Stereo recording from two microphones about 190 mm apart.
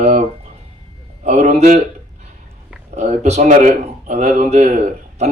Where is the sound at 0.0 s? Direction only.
35° right (ahead or behind).